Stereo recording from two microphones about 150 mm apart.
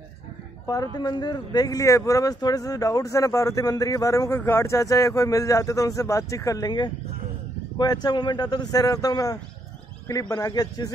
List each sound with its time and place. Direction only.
0.9 s speech: 30° left (ahead or behind)